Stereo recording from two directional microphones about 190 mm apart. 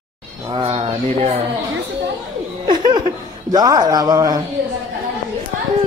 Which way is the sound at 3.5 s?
20° right (ahead or behind).